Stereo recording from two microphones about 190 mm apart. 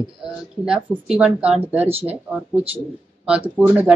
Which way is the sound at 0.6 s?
5° right (ahead or behind).